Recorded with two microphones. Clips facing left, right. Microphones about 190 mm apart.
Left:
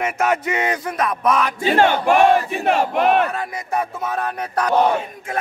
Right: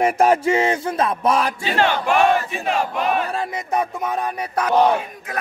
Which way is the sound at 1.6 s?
50° left (ahead or behind).